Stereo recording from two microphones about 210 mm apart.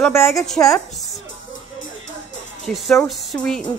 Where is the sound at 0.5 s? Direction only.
Centre (ahead or behind).